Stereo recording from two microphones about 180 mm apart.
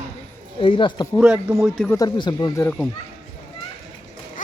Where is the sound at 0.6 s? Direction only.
30° left (ahead or behind).